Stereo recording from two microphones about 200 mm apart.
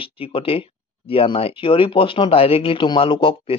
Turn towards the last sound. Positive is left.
turn(degrees=25)  # may be behind; listen again after turning